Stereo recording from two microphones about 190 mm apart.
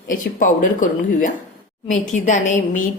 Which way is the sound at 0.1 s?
45° left (ahead or behind).